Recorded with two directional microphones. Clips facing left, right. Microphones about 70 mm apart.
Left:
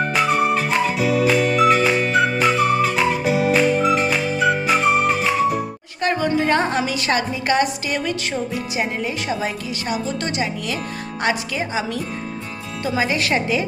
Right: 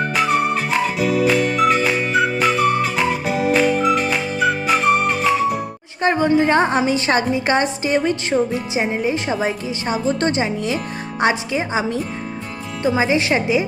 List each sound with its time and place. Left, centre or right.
0.1 s music: centre
6.0 s a woman's voice: right